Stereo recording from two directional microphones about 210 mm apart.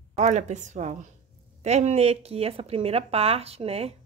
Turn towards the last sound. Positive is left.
turn(degrees=-30)  # may be behind; listen again after turning